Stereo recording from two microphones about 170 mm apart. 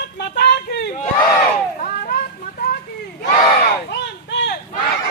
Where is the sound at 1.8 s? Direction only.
60° left (ahead or behind).